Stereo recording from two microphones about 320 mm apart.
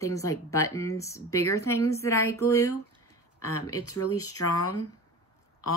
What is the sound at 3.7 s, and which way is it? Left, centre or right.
Speech, left.